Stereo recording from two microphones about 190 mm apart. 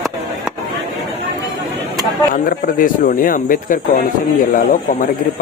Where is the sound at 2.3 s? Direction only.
45° left (ahead or behind).